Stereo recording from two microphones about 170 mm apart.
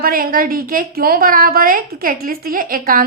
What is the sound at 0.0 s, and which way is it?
A woman's voice, 55° right (ahead or behind).